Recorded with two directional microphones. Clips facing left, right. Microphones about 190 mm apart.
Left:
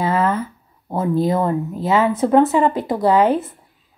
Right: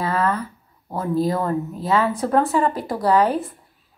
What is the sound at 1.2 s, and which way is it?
Speech, 25° left (ahead or behind).